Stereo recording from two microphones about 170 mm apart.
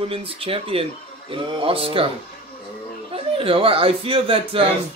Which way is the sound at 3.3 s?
30° right (ahead or behind).